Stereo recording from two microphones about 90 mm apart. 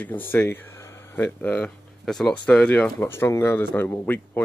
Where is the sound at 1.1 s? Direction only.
20° left (ahead or behind).